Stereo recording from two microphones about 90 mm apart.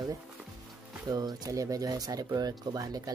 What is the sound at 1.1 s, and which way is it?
Speech, 45° right (ahead or behind).